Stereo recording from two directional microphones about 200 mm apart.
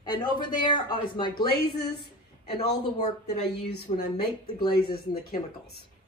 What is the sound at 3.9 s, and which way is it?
Speech, 30° left (ahead or behind).